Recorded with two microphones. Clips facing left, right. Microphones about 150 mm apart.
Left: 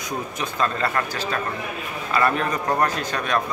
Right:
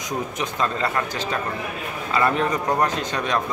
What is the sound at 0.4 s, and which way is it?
A man's voice, 20° right (ahead or behind).